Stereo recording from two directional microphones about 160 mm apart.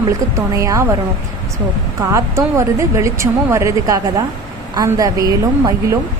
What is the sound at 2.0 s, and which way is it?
Speech, 20° right (ahead or behind).